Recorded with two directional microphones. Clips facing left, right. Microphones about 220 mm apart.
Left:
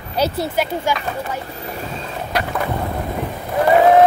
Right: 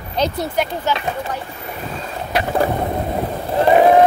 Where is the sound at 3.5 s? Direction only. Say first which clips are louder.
Even; 20° right (ahead or behind).